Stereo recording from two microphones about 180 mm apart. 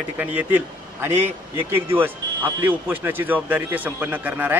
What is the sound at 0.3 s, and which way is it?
Speech, 10° right (ahead or behind).